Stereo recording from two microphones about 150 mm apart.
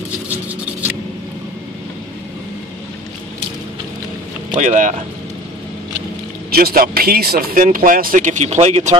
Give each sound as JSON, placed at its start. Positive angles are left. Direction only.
{"t": 4.6, "sound": "speech", "side_deg": -55}
{"t": 6.5, "sound": "speech", "side_deg": -80}